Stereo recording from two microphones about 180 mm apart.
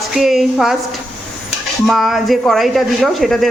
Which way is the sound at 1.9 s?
Centre (ahead or behind).